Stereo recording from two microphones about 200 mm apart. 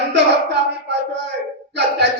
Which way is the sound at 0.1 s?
60° right (ahead or behind).